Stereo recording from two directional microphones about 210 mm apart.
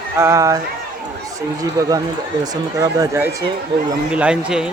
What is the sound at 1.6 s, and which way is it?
Speech, 15° right (ahead or behind).